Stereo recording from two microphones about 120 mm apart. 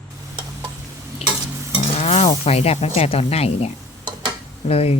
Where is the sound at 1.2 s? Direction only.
55° left (ahead or behind).